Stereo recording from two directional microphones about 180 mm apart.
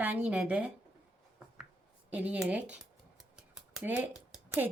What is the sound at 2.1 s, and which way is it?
Speech, 5° right (ahead or behind).